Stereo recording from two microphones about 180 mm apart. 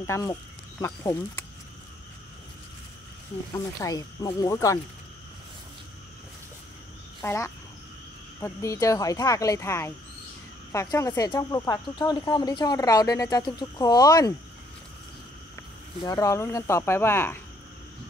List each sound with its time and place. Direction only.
0.0 s speech: 15° left (ahead or behind)
3.5 s speech: 20° left (ahead or behind)
7.2 s speech: 15° left (ahead or behind)
16.0 s speech: 20° left (ahead or behind)